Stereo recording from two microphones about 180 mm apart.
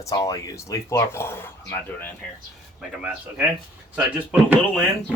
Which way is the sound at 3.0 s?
5° right (ahead or behind).